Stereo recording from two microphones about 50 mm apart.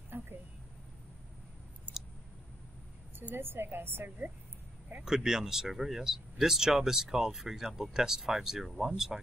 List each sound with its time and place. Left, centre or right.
0.1 s a sound: right
3.3 s a woman's voice: right
5.0 s speech: centre